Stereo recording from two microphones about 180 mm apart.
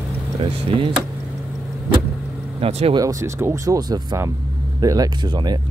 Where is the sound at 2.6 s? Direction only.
35° right (ahead or behind).